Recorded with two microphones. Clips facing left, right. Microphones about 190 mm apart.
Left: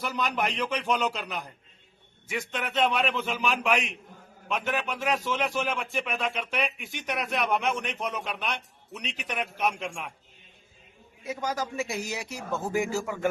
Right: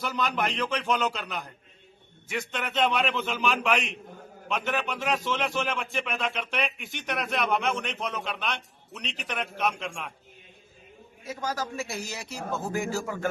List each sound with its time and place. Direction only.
0.1 s a man's voice: 5° left (ahead or behind)
11.3 s a man's voice: 15° left (ahead or behind)